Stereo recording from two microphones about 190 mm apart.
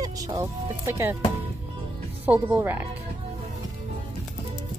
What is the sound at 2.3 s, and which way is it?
Speech, 10° right (ahead or behind).